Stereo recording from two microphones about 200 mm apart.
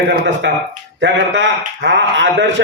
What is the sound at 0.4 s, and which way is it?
A man's voice, 65° right (ahead or behind).